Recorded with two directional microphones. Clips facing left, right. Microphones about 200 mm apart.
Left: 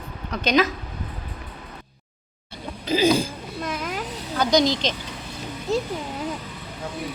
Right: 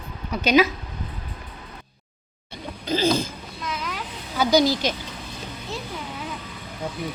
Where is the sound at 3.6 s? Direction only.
50° left (ahead or behind).